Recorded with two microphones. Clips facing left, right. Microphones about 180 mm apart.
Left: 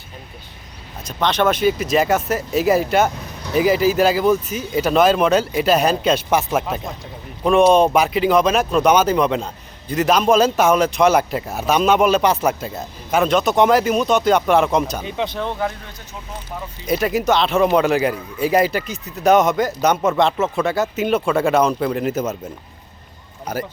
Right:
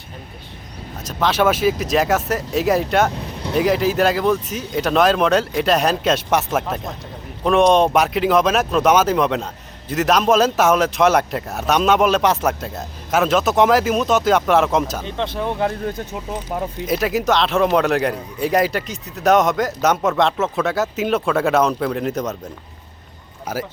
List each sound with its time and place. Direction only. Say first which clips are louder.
1.0 s speech: right 1 dB; 5° right (ahead or behind)
15.8 s speech: right 14 dB; 50° right (ahead or behind)
16.8 s speech: left 2 dB; centre (ahead or behind)
23.5 s speech: even; 5° right (ahead or behind)